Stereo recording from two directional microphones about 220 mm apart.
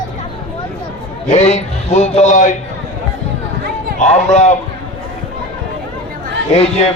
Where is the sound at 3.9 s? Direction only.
30° left (ahead or behind).